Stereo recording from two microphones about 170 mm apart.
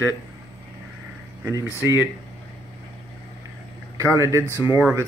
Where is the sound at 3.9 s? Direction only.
20° right (ahead or behind).